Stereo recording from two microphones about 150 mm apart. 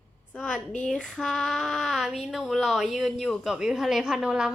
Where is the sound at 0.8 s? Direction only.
Centre (ahead or behind).